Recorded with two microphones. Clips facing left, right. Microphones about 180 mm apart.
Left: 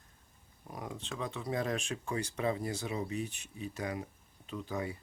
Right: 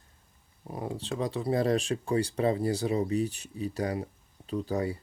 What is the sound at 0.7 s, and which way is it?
Speech, 30° right (ahead or behind).